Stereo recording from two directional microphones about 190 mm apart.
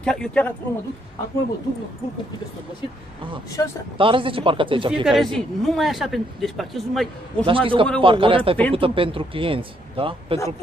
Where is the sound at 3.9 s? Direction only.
25° right (ahead or behind).